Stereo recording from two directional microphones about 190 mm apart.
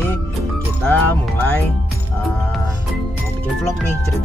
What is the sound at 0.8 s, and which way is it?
Music, 5° left (ahead or behind).